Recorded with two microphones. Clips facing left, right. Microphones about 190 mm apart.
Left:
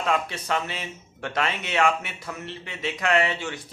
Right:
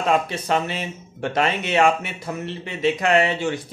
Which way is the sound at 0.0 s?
25° right (ahead or behind).